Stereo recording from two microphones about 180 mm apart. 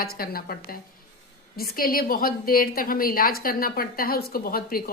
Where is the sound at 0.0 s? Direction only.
55° left (ahead or behind).